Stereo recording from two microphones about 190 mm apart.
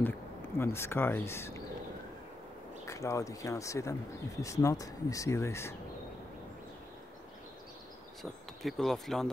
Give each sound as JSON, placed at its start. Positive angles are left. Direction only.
{"t": 0.6, "sound": "speech", "side_deg": 15}
{"t": 2.9, "sound": "speech", "side_deg": 15}
{"t": 8.2, "sound": "speech", "side_deg": 0}